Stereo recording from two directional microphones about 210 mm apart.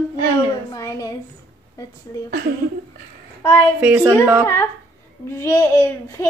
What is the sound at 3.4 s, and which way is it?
Speech, 10° left (ahead or behind).